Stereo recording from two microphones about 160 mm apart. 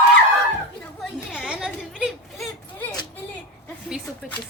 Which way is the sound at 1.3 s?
5° right (ahead or behind).